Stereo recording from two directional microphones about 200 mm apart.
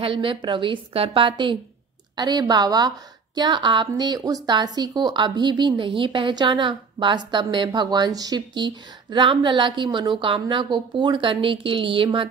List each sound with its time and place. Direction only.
0.0 s a woman's voice: 25° right (ahead or behind)